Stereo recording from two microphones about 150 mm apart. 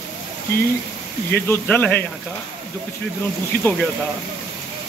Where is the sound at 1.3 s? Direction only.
10° left (ahead or behind).